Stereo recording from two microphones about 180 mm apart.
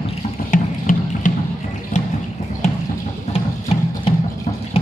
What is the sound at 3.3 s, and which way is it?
Music, 35° left (ahead or behind).